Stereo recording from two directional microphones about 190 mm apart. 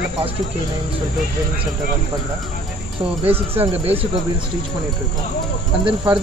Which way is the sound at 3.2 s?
30° right (ahead or behind).